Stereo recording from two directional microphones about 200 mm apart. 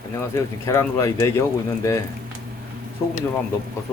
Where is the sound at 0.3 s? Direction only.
15° left (ahead or behind).